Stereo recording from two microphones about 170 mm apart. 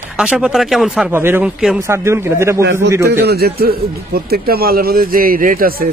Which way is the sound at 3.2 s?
70° right (ahead or behind).